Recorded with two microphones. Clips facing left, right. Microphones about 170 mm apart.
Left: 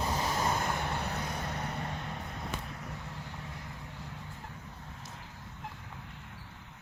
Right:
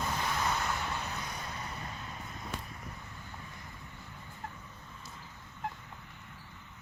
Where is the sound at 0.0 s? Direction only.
35° left (ahead or behind); by 6.3 s 70° left (ahead or behind).